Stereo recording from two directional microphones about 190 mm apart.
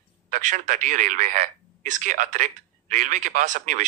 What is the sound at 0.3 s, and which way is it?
Speech, 40° right (ahead or behind).